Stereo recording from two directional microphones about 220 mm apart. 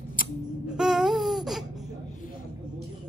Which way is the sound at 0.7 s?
Centre (ahead or behind).